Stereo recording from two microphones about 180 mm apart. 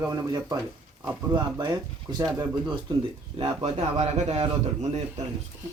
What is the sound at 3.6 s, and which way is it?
A man's voice, 35° right (ahead or behind).